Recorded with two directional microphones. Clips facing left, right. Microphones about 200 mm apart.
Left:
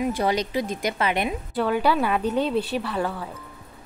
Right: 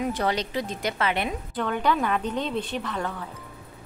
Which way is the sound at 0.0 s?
10° left (ahead or behind).